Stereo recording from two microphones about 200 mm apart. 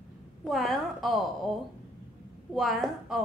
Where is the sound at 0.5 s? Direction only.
Centre (ahead or behind).